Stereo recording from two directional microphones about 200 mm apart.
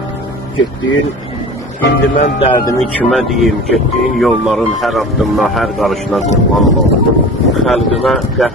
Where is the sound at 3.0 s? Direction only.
Centre (ahead or behind).